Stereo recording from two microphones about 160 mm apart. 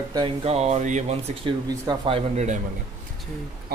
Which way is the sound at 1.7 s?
30° right (ahead or behind).